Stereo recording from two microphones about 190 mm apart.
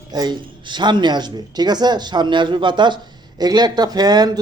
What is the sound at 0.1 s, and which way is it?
Speech, 20° right (ahead or behind).